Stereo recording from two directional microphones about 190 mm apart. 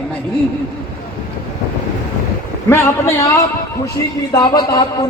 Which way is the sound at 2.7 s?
15° left (ahead or behind).